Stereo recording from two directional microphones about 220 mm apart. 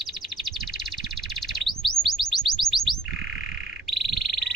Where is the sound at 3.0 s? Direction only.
60° right (ahead or behind).